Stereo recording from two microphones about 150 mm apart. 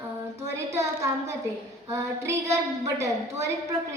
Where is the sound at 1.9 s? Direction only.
20° right (ahead or behind).